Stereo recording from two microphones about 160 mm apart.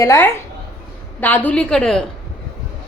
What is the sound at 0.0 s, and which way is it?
A woman's voice, 15° left (ahead or behind).